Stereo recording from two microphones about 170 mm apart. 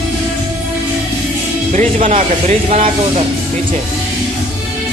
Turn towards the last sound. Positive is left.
turn(degrees=-35)  # may be behind; listen again after turning